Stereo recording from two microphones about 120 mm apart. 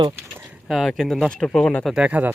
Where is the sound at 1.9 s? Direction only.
10° right (ahead or behind).